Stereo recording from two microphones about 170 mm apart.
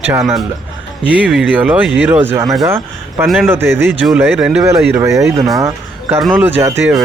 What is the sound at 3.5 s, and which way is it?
A man's voice, 15° right (ahead or behind).